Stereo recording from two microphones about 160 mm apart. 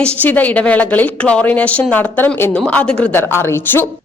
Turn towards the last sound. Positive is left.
turn(degrees=15)  # may be behind; listen again after turning